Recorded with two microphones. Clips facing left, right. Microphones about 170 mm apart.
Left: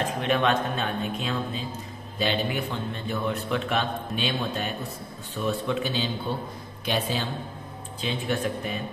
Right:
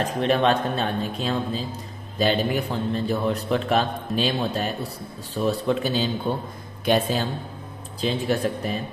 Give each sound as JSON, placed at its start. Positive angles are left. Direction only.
{"t": 0.0, "sound": "a man's voice", "side_deg": -35}